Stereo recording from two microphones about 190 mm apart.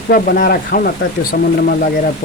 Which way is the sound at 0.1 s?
50° left (ahead or behind).